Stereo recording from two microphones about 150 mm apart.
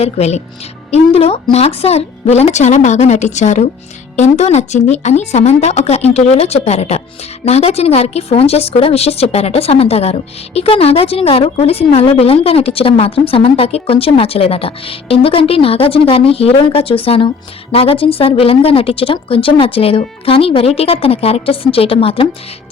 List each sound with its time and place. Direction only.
0.0 s a woman's voice: 45° left (ahead or behind)